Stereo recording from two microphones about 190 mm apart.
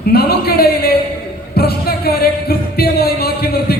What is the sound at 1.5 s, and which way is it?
Music, 55° left (ahead or behind).